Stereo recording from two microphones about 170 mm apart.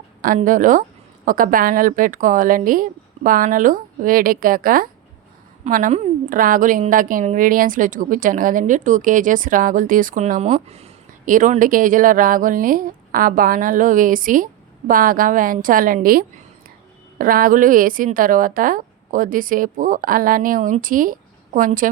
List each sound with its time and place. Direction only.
0.3 s speech: 50° right (ahead or behind)
11.3 s speech: 50° right (ahead or behind)